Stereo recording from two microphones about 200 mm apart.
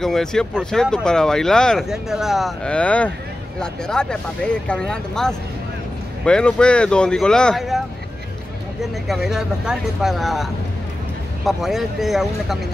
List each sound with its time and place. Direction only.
0.0 s speech: centre (ahead or behind)
9.0 s speech: centre (ahead or behind)